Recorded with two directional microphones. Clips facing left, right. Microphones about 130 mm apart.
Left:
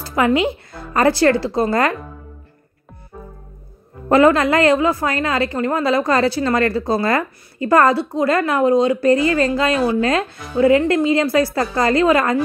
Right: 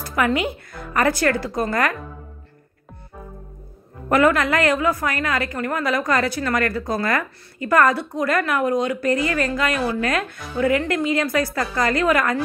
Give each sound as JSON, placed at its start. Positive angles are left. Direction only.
{"t": 0.0, "sound": "a woman's voice", "side_deg": 25}
{"t": 4.1, "sound": "a woman's voice", "side_deg": 25}